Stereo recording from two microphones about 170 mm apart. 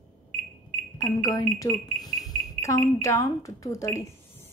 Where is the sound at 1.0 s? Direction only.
20° left (ahead or behind).